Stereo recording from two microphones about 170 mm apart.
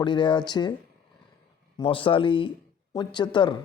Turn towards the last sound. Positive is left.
turn(degrees=25)  # may be behind; listen again after turning